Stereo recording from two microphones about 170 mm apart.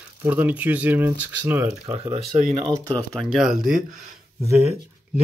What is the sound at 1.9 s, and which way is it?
Speech, 40° right (ahead or behind).